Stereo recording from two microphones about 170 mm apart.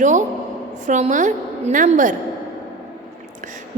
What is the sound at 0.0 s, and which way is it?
A woman's voice, 45° right (ahead or behind).